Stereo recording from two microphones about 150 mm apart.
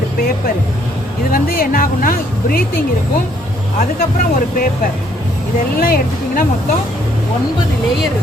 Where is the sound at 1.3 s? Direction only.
70° left (ahead or behind).